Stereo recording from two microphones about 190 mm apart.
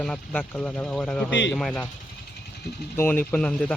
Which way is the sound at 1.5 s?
5° left (ahead or behind).